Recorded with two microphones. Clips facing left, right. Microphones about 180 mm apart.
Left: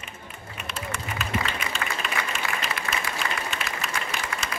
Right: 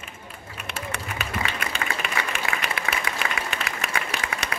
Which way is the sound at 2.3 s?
65° right (ahead or behind).